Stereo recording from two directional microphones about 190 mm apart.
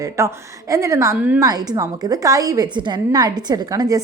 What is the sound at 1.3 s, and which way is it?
A woman's voice, 20° right (ahead or behind).